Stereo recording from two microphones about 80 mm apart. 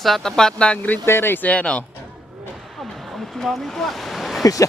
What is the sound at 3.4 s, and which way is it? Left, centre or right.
Speech, centre.